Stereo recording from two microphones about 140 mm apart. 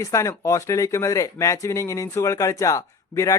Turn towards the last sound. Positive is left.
turn(degrees=20)  # may be behind; listen again after turning